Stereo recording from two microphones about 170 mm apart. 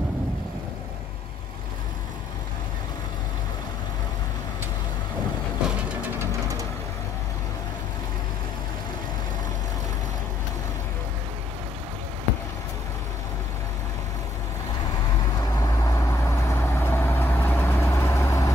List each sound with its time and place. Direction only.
15.6 s vehicle: 15° left (ahead or behind)